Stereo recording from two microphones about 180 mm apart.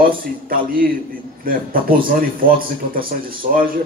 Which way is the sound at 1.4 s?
55° right (ahead or behind).